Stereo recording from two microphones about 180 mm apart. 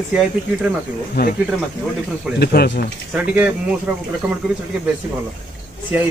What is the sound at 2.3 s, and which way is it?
Speech, 65° left (ahead or behind).